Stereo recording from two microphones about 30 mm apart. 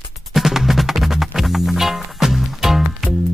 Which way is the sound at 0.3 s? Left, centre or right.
Centre.